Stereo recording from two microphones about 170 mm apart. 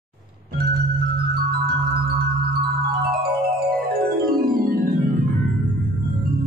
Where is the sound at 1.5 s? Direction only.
65° right (ahead or behind).